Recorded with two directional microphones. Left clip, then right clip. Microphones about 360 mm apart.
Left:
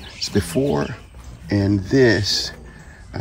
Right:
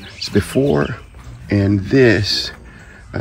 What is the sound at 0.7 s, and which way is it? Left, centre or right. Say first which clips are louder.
Speech: right 5 dB; centre.